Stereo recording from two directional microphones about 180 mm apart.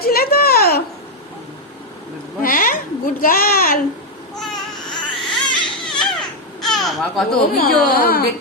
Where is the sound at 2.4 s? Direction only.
50° left (ahead or behind).